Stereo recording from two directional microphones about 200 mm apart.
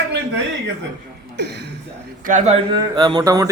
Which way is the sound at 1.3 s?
60° right (ahead or behind).